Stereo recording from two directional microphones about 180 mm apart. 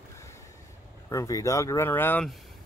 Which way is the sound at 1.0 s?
20° left (ahead or behind).